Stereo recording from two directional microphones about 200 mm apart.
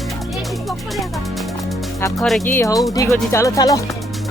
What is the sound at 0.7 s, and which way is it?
Music, centre (ahead or behind).